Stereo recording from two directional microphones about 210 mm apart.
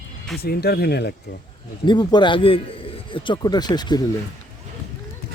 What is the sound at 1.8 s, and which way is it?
A man's voice, 20° left (ahead or behind).